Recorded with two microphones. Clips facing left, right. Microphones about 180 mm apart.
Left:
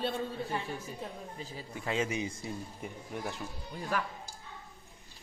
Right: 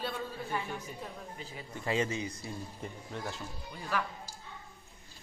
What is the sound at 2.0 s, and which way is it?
A woman's voice, 20° left (ahead or behind).